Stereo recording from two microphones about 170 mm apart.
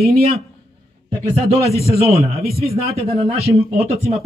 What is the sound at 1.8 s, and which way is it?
A man's voice, 35° right (ahead or behind).